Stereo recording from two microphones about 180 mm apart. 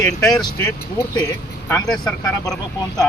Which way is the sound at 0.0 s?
20° left (ahead or behind).